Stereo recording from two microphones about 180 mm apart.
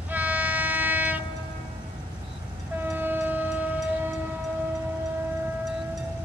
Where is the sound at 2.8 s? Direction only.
10° right (ahead or behind).